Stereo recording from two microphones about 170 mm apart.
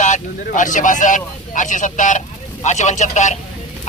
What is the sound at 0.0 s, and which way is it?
A man's voice, 50° left (ahead or behind).